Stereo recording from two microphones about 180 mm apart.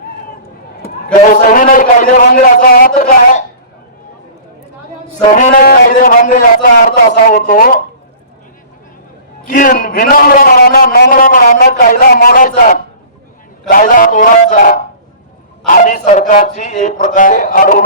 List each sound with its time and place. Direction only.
1.2 s a man's voice: 45° left (ahead or behind)
5.3 s a man's voice: 45° left (ahead or behind)
9.5 s a man's voice: 50° left (ahead or behind)